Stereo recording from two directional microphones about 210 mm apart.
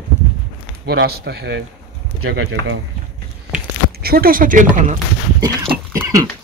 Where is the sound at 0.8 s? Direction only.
50° right (ahead or behind).